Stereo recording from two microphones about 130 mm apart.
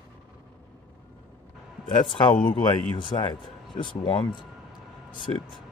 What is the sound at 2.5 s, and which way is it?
Speech, 35° left (ahead or behind).